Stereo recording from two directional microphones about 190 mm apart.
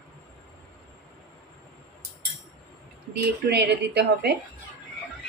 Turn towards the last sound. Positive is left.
turn(degrees=-60)  # may be behind; listen again after turning